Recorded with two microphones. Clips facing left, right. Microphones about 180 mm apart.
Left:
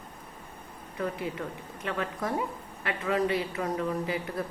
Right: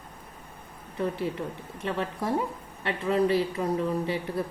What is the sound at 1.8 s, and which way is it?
A woman's voice, 30° right (ahead or behind).